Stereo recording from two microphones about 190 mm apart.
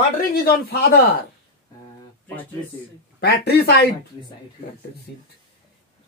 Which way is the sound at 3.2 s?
60° left (ahead or behind).